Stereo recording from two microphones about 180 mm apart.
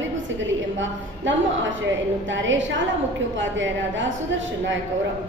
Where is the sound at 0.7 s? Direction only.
90° right.